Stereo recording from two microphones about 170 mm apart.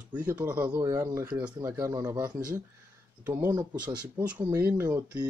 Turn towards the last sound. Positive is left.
turn(degrees=-15)  # may be behind; listen again after turning